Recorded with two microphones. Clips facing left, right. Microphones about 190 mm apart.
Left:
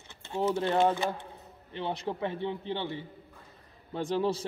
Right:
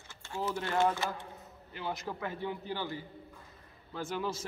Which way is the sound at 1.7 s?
30° left (ahead or behind).